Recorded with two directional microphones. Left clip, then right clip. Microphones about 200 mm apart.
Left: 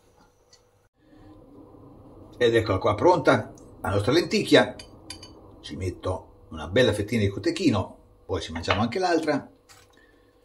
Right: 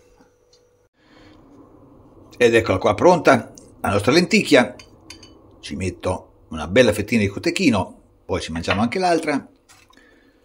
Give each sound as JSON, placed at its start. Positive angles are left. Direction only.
{"t": 2.3, "sound": "speech", "side_deg": -50}